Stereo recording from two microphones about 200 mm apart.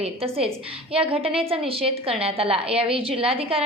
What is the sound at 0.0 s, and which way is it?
A woman's voice, 30° right (ahead or behind).